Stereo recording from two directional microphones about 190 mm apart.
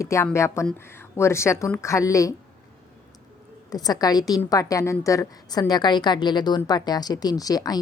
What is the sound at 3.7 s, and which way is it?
A woman's voice, 20° left (ahead or behind).